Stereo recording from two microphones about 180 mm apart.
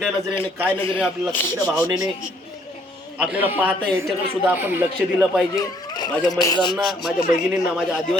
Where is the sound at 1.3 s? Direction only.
10° left (ahead or behind).